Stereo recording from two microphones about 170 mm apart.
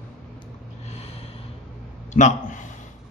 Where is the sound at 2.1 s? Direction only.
45° left (ahead or behind).